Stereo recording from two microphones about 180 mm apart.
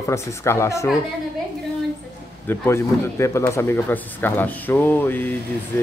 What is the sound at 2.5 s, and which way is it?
Speech, 15° left (ahead or behind).